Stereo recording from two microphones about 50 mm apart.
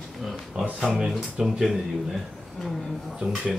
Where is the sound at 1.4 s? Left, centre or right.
Centre.